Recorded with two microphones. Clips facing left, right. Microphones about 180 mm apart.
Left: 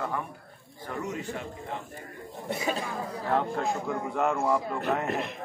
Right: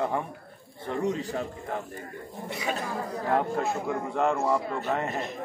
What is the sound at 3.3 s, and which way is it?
A man's voice, 5° right (ahead or behind).